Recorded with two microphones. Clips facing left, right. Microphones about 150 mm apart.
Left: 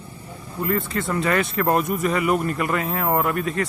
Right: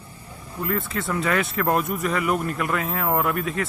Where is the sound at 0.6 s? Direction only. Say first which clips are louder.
Left 3 dB; centre (ahead or behind).